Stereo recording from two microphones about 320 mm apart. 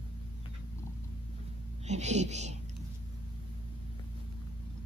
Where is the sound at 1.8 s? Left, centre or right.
Right.